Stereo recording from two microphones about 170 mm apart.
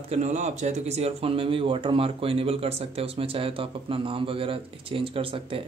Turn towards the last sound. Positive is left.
turn(degrees=-30)  # may be behind; listen again after turning